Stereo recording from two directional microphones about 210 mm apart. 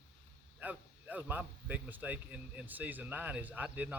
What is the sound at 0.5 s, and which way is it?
A man's voice, 10° right (ahead or behind).